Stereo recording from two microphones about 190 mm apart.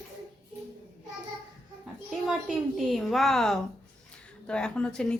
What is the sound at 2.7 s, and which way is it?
Speech, centre (ahead or behind).